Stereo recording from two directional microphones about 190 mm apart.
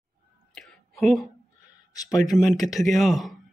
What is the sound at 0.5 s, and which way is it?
Whispering, centre (ahead or behind).